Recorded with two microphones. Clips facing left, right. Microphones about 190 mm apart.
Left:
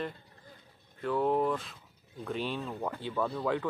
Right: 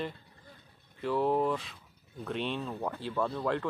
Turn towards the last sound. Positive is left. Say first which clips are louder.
# even
turn(degrees=0)  # may be behind; listen again after turning